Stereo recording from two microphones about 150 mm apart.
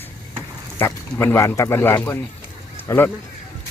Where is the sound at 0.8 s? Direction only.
15° left (ahead or behind).